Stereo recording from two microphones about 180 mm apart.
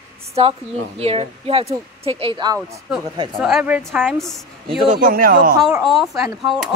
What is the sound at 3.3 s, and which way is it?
Speech, 5° right (ahead or behind).